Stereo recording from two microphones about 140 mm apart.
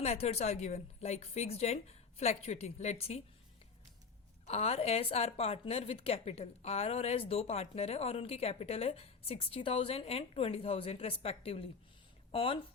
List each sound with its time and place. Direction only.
0.0 s a woman's voice: 50° left (ahead or behind)
4.4 s a woman's voice: 45° left (ahead or behind)